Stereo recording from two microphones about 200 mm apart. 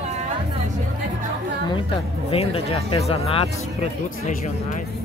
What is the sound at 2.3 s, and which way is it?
Speech, 30° left (ahead or behind).